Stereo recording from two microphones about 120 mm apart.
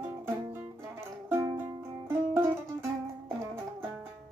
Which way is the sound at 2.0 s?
20° right (ahead or behind).